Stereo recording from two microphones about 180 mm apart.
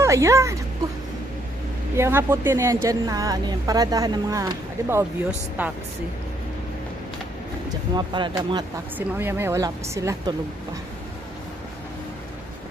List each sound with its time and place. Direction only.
0.0 s speech: 15° right (ahead or behind)
2.0 s a woman's voice: 15° right (ahead or behind)
7.9 s a woman's voice: 25° right (ahead or behind)
8.9 s a woman's voice: 10° right (ahead or behind)